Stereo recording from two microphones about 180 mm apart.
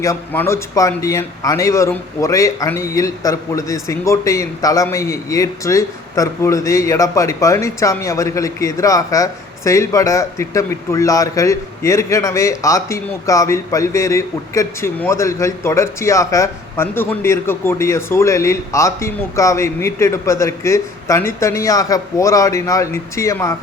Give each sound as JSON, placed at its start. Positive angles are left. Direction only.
{"t": 0.0, "sound": "speech", "side_deg": 15}